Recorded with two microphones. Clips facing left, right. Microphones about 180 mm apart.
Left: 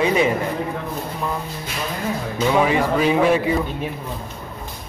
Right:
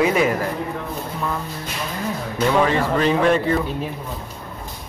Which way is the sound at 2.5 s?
10° left (ahead or behind).